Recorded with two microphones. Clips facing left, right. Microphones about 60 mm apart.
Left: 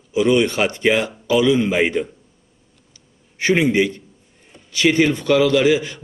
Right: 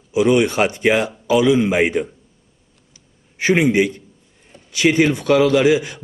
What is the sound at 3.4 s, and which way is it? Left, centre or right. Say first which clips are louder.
A man's voice: right 1 dB; centre.